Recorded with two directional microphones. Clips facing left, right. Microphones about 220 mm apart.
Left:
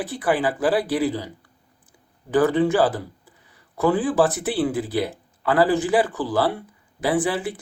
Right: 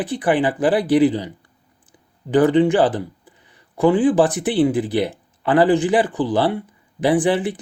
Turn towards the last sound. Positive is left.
turn(degrees=-20)  # may be behind; listen again after turning